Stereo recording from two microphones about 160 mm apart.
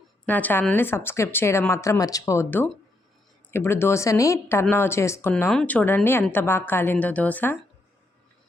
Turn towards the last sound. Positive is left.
turn(degrees=10)  # may be behind; listen again after turning